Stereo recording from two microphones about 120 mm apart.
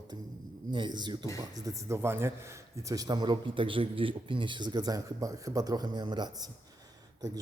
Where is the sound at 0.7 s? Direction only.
40° right (ahead or behind).